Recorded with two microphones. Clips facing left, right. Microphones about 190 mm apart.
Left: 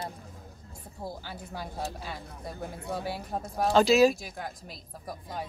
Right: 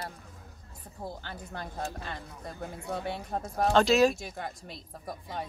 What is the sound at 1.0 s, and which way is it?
Speech, 10° left (ahead or behind).